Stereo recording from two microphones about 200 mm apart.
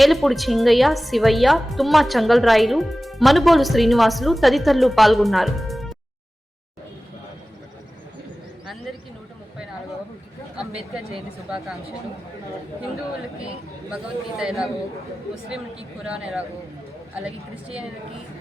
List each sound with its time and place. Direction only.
0.0 s a woman's voice: centre (ahead or behind)
10.9 s a woman's voice: centre (ahead or behind)
13.9 s a woman's voice: centre (ahead or behind)
16.0 s a woman's voice: 5° right (ahead or behind)